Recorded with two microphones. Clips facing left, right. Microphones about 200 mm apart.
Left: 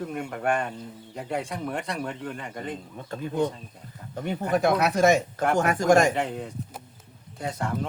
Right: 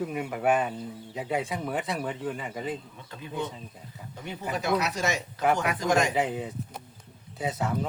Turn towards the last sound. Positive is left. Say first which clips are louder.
# right 1 dB
turn(degrees=0)  # may be behind; listen again after turning